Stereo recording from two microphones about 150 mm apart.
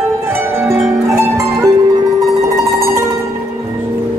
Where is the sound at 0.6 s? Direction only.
20° right (ahead or behind).